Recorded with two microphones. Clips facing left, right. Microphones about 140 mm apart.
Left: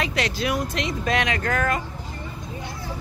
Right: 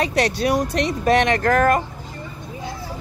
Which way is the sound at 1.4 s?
50° right (ahead or behind).